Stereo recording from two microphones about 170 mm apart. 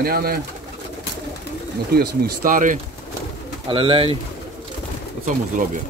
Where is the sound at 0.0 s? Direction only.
65° right (ahead or behind).